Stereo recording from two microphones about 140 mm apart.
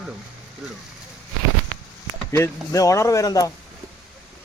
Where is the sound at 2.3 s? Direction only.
20° left (ahead or behind).